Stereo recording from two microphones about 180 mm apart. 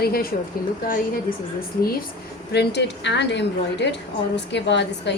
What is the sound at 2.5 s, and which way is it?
A woman's voice, 65° left (ahead or behind).